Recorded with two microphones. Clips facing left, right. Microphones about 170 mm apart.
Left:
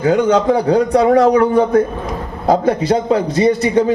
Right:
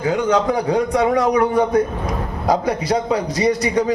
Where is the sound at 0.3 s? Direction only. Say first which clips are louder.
Left 4 dB; 30° left (ahead or behind).